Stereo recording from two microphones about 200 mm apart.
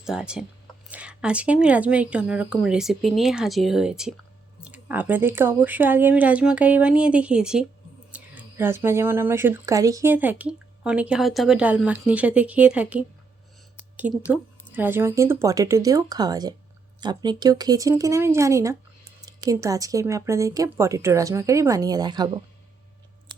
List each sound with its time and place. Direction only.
0.0 s a woman's voice: 5° right (ahead or behind)
13.7 s a sound: 10° right (ahead or behind)
14.8 s speech: 10° right (ahead or behind)
23.3 s chewing: 25° right (ahead or behind)